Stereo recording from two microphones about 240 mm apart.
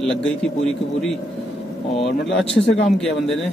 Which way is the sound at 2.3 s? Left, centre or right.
Left.